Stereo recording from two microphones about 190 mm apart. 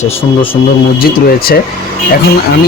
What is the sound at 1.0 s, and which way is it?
Speech, 50° left (ahead or behind).